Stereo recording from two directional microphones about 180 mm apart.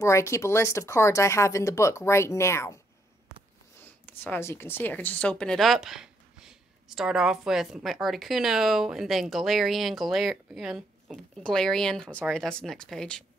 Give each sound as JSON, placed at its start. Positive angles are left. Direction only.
{"t": 0.0, "sound": "speech", "side_deg": 15}
{"t": 3.8, "sound": "a woman's voice", "side_deg": 10}